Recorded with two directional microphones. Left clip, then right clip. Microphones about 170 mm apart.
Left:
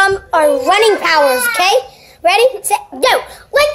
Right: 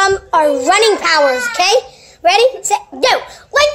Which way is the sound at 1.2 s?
10° left (ahead or behind).